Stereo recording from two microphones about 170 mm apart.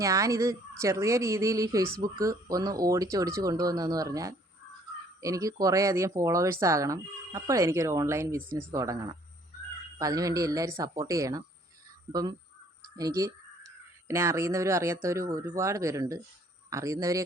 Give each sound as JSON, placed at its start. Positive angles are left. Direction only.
{"t": 0.0, "sound": "speech", "side_deg": -20}